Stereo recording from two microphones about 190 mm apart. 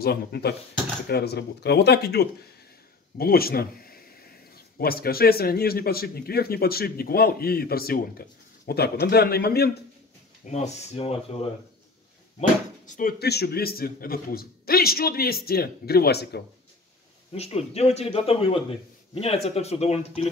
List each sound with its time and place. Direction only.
0.0 s speech: 55° left (ahead or behind)
10.4 s a man's voice: 35° left (ahead or behind)
12.4 s speech: 40° left (ahead or behind)
13.2 s speech: 60° left (ahead or behind)
17.3 s a man's voice: 35° left (ahead or behind)